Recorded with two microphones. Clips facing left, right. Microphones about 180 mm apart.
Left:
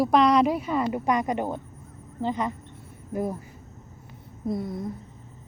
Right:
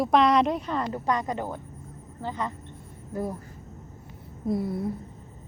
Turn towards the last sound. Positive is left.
turn(degrees=-5)  # may be behind; listen again after turning